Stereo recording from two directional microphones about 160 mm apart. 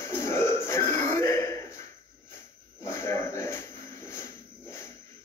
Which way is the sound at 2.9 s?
15° left (ahead or behind).